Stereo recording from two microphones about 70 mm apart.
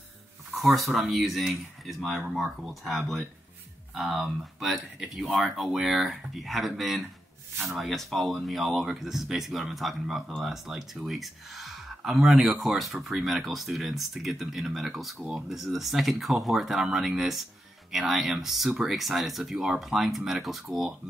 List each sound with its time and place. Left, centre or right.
0.6 s speech: centre